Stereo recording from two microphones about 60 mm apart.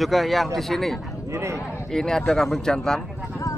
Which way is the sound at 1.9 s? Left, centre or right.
Centre.